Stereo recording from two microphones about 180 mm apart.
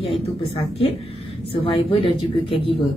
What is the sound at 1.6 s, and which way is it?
Speech, 30° left (ahead or behind).